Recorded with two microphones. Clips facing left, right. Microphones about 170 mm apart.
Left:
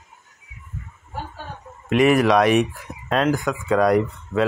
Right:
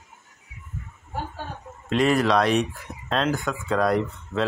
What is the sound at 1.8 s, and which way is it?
Speech, 15° left (ahead or behind).